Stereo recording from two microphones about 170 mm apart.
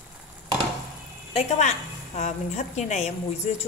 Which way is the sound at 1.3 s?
40° left (ahead or behind).